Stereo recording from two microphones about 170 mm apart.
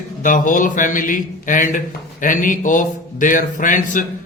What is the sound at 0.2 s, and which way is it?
A man's voice, 50° left (ahead or behind).